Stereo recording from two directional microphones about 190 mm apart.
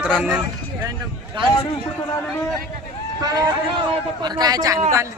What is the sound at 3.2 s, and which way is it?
A man's voice, 20° right (ahead or behind).